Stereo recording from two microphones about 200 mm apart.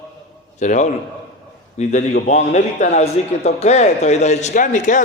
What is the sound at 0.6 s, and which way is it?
A man's voice, 35° left (ahead or behind).